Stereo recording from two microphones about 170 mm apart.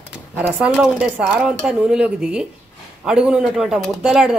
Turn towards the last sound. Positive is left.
turn(degrees=-5)  # may be behind; listen again after turning